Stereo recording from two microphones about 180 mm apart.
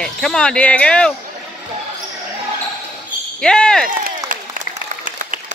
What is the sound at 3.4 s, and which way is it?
Speech, 5° left (ahead or behind).